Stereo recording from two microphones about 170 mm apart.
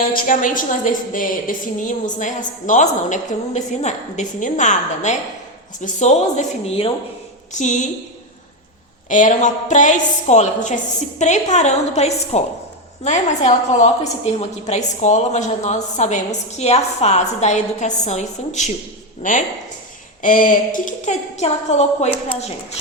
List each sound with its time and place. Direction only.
0.1 s a woman's voice: 55° left (ahead or behind)
9.0 s a woman's voice: 50° left (ahead or behind)